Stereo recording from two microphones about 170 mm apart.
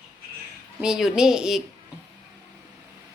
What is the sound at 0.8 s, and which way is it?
Speech, 5° right (ahead or behind).